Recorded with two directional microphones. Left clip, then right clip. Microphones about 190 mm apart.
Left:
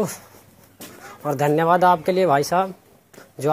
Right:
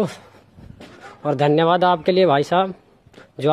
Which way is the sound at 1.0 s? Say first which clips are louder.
Right 3 dB; 40° right (ahead or behind).